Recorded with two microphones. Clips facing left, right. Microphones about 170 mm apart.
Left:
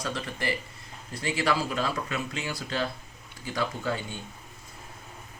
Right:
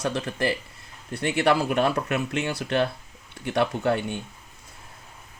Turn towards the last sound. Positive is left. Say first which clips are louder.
# right 7 dB
turn(degrees=-65)  # may be behind; listen again after turning